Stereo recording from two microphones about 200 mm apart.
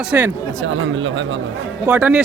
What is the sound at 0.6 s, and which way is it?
Speech, 70° right (ahead or behind).